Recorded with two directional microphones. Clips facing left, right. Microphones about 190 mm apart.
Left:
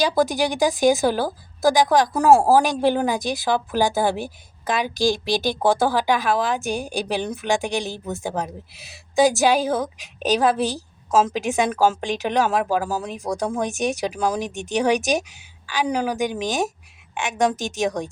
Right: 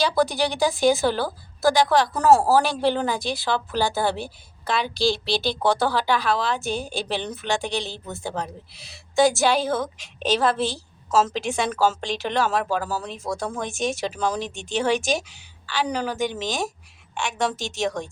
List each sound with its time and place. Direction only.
0.0 s a woman's voice: 15° left (ahead or behind)